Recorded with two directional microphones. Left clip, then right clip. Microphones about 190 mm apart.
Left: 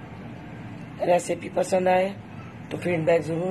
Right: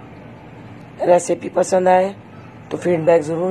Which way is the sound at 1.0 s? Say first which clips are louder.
Right 8 dB; 15° right (ahead or behind).